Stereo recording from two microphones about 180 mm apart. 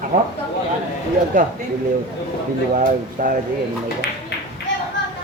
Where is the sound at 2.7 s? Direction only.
45° right (ahead or behind).